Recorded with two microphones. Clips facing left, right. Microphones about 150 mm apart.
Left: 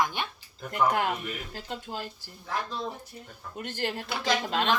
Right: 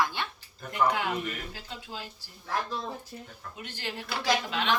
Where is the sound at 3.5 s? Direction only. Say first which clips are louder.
Left 6 dB; 50° left (ahead or behind).